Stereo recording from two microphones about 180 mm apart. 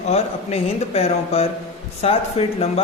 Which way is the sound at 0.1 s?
35° left (ahead or behind).